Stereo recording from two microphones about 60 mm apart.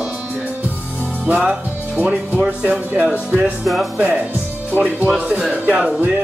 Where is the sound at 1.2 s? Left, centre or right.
Right.